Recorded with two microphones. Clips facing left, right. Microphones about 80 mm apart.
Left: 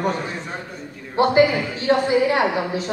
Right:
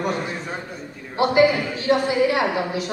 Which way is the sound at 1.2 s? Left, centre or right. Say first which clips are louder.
Left 1 dB; left.